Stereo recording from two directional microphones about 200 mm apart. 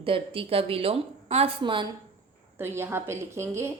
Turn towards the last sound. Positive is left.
turn(degrees=-15)  # may be behind; listen again after turning